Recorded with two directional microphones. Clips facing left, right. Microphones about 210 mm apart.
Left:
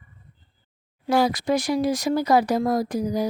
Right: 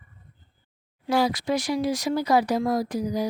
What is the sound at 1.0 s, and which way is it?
Speech, 50° left (ahead or behind).